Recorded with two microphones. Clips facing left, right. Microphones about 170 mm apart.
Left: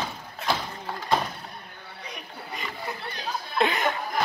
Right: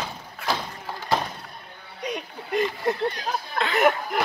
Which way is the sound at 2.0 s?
70° right (ahead or behind).